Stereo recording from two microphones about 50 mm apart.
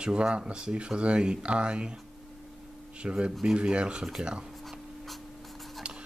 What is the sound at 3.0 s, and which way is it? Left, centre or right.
Speech, centre.